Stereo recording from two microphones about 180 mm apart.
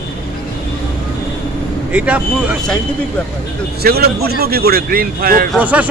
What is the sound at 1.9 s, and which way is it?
Speech, 10° right (ahead or behind).